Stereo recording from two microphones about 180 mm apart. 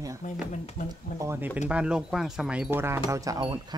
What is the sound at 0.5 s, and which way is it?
Speech, 40° left (ahead or behind).